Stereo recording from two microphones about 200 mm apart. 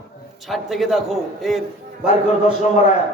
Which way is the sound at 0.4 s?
Centre (ahead or behind).